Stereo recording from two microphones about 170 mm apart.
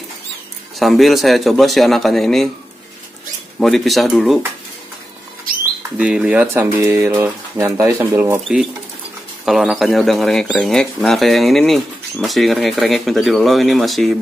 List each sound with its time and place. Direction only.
0.7 s speech: centre (ahead or behind)
3.5 s speech: centre (ahead or behind)
5.9 s speech: 5° right (ahead or behind)
9.5 s speech: centre (ahead or behind)